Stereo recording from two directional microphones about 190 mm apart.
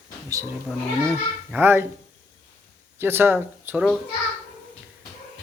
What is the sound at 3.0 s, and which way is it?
Speech, 10° right (ahead or behind).